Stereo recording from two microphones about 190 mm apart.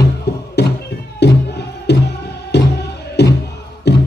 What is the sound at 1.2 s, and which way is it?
Music, 60° left (ahead or behind).